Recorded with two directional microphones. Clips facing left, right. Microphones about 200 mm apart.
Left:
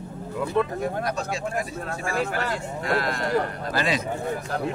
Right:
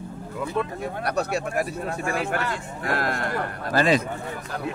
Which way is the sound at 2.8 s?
50° right (ahead or behind).